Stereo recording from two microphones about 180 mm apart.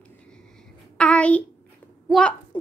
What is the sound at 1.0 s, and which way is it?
Speech, 5° left (ahead or behind).